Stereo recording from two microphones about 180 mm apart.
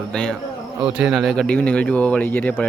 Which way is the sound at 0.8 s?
5° right (ahead or behind).